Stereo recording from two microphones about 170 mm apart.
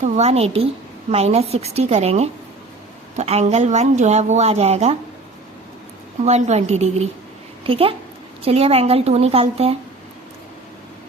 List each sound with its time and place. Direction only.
0.0 s a woman's voice: 40° right (ahead or behind)
6.2 s a woman's voice: 40° right (ahead or behind)